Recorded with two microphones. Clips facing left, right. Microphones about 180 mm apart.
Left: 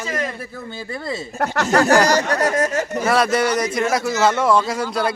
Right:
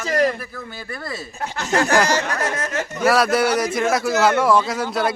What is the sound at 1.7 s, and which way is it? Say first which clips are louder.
Speech: left 3 dB; 40° left (ahead or behind).